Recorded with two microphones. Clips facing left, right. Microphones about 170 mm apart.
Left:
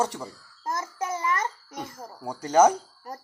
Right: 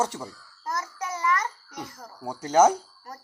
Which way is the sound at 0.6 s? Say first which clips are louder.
Left 2 dB; 25° left (ahead or behind).